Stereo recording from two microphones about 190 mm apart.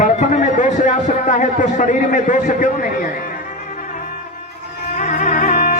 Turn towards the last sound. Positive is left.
turn(degrees=45)  # may be behind; listen again after turning